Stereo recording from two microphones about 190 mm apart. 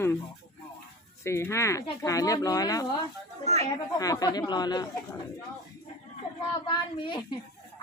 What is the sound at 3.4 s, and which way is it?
Speech, 35° right (ahead or behind).